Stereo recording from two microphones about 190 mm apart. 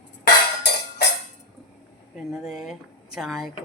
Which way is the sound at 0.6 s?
60° left (ahead or behind).